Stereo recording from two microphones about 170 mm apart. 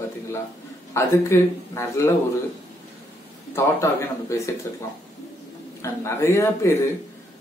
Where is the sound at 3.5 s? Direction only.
15° left (ahead or behind).